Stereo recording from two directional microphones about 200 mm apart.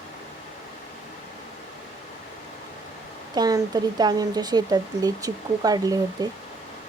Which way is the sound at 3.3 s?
20° right (ahead or behind).